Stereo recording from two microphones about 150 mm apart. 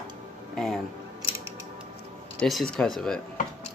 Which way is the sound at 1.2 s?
20° right (ahead or behind).